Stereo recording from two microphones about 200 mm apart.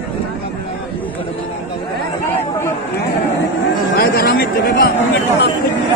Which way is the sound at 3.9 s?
50° left (ahead or behind).